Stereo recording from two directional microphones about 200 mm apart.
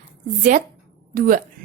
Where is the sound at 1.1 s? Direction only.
45° right (ahead or behind).